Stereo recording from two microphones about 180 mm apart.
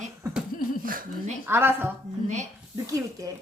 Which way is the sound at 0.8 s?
50° right (ahead or behind).